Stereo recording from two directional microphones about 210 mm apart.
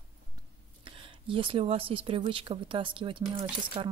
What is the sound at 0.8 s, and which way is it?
Speech, 25° right (ahead or behind).